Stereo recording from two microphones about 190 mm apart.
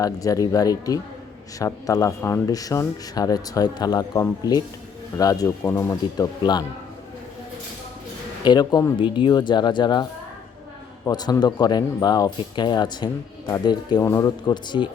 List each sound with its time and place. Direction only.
0.0 s a man's voice: 20° left (ahead or behind)
8.4 s speech: 20° left (ahead or behind)